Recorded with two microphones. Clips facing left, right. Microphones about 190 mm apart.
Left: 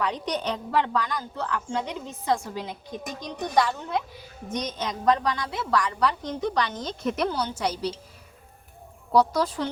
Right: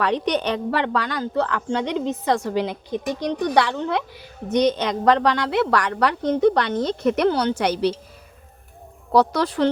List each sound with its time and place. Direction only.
0.0 s a woman's voice: 70° right (ahead or behind)
9.1 s a woman's voice: 70° right (ahead or behind)